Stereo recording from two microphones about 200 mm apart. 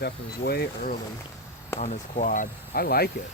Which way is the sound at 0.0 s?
55° left (ahead or behind).